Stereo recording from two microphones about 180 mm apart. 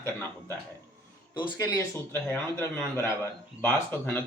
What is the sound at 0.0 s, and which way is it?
Speech, 15° left (ahead or behind).